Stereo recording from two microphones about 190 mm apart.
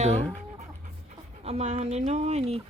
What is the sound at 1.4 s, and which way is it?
Speech, 35° right (ahead or behind).